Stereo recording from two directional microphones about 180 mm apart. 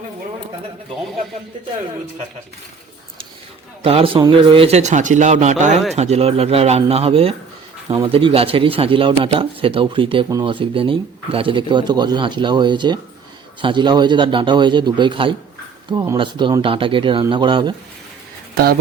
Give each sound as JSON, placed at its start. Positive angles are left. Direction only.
{"t": 3.8, "sound": "a man's voice", "side_deg": -30}
{"t": 18.5, "sound": "speech", "side_deg": -55}